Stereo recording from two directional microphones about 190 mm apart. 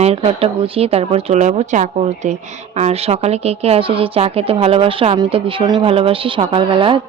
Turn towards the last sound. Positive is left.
turn(degrees=-25)  # may be behind; listen again after turning